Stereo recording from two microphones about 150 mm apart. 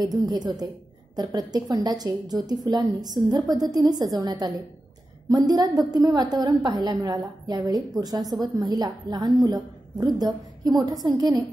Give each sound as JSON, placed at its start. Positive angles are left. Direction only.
{"t": 0.0, "sound": "a woman's voice", "side_deg": -25}